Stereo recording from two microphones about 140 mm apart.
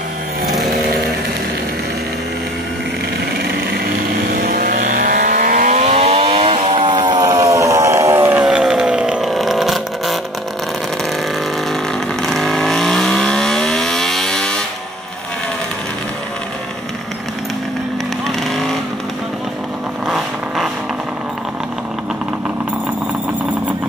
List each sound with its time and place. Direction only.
0.5 s chainsaw: centre (ahead or behind)
4.4 s vehicle: 90° right; by 10.1 s centre (ahead or behind)
11.7 s vehicle: centre (ahead or behind)
18.5 s vehicle: centre (ahead or behind)
20.1 s vehicle: centre (ahead or behind)